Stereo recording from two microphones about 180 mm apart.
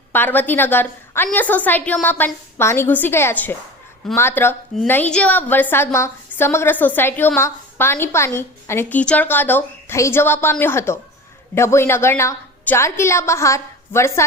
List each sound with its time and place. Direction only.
0.1 s a woman's voice: 10° left (ahead or behind)